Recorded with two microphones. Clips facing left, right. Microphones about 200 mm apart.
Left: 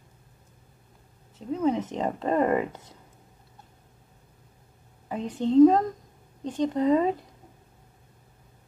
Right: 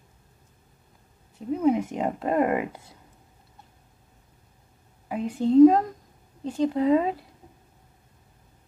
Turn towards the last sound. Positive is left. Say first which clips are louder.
# right 1 dB
turn(degrees=-10)  # may be behind; listen again after turning